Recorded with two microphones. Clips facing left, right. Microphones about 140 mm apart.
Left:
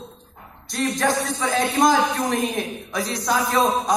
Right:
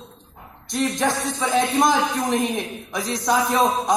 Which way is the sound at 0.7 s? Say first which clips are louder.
Even; 20° right (ahead or behind).